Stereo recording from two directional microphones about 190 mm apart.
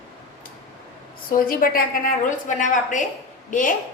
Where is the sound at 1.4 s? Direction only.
50° left (ahead or behind).